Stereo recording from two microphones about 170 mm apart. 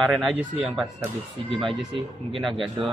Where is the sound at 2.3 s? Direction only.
Centre (ahead or behind).